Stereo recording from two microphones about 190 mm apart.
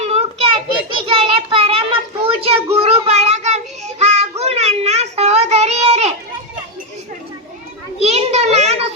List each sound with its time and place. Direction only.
0.0 s child singing: 35° right (ahead or behind)
0.5 s children playing: 30° right (ahead or behind)
2.2 s a sound: 30° right (ahead or behind)
2.7 s child singing: 30° right (ahead or behind)
8.0 s children playing: 35° right (ahead or behind)